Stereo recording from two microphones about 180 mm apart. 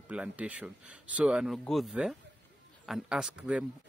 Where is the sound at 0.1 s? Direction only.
5° right (ahead or behind).